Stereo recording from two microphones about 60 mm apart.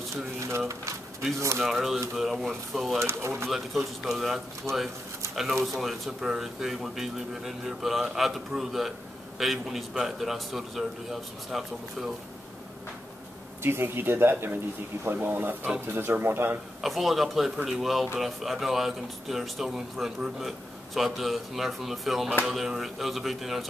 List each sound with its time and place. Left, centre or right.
1.6 s speech: centre
3.0 s speech: right
3.4 s speech: centre
4.7 s speech: right
5.3 s speech: centre
13.6 s speech: right
16.8 s speech: centre